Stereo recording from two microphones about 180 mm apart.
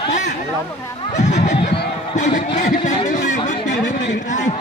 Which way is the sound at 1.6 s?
70° left (ahead or behind).